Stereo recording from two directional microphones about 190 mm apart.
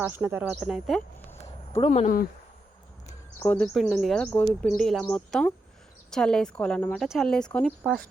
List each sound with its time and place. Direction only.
0.0 s speech: 10° right (ahead or behind)
1.9 s speech: 45° left (ahead or behind)
3.4 s speech: 5° left (ahead or behind)